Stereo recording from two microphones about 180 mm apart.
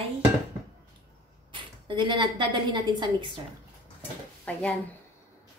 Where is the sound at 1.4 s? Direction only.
25° right (ahead or behind).